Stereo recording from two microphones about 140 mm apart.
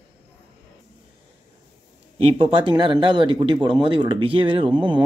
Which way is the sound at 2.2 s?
45° right (ahead or behind).